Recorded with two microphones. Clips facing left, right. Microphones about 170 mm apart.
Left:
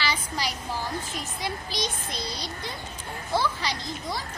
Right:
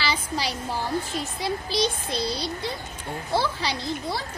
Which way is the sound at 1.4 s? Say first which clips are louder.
Right 6 dB; 30° right (ahead or behind).